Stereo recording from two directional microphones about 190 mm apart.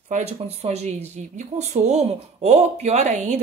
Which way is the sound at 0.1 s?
35° right (ahead or behind).